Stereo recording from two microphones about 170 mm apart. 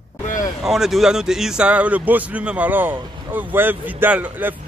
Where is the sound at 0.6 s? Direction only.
Centre (ahead or behind).